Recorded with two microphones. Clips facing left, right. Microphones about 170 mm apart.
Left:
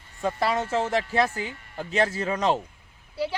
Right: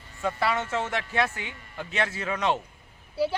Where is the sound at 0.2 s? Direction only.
35° left (ahead or behind).